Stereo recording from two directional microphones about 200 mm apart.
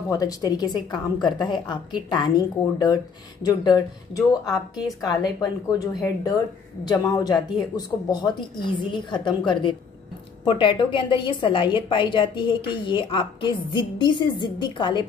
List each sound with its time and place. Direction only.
0.1 s a woman's voice: 20° left (ahead or behind)